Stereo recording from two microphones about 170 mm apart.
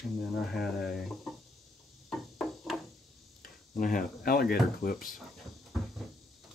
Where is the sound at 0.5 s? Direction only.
Centre (ahead or behind).